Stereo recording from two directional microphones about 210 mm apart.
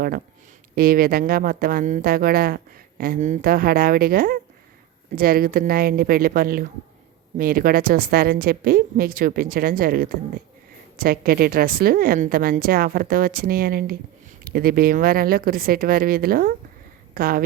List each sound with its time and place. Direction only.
0.8 s speech: 45° right (ahead or behind)